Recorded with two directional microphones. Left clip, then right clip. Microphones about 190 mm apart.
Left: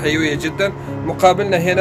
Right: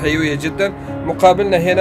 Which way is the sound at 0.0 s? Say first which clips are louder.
Even; 30° right (ahead or behind).